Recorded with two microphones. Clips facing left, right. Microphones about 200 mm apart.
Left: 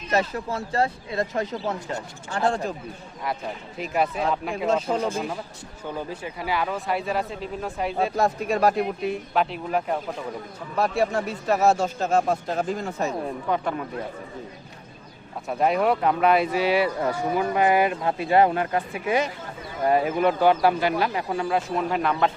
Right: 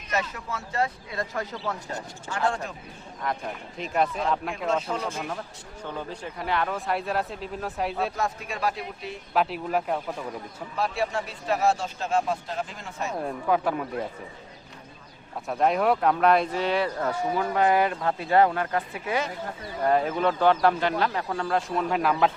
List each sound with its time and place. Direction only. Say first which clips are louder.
0.1 s speech: left 6 dB; 35° left (ahead or behind)
2.3 s speech: left 4 dB; 35° left (ahead or behind)
3.8 s speech: left 1 dB; 5° left (ahead or behind)
6.0 s speech: left 3 dB; 10° left (ahead or behind)
8.1 s a man's voice: left 7 dB; 40° left (ahead or behind); by 9.1 s 55° left (ahead or behind)
9.3 s speech: right 2 dB; centre (ahead or behind)
10.8 s a man's voice: left 5 dB; 45° left (ahead or behind)
13.2 s speech: right 1 dB; 5° right (ahead or behind)
15.4 s speech: left 1 dB; 5° left (ahead or behind)